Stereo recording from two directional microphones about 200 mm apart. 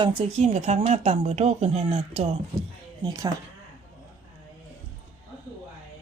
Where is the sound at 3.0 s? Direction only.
20° right (ahead or behind).